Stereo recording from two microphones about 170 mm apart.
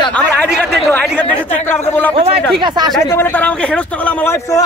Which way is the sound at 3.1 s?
10° left (ahead or behind).